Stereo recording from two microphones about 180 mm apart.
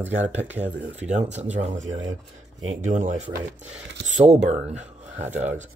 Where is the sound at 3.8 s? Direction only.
90° right.